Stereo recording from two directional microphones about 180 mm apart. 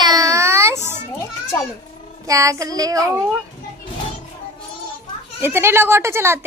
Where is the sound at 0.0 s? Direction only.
20° right (ahead or behind).